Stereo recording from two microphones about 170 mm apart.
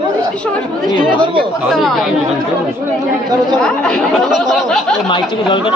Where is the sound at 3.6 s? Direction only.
5° left (ahead or behind).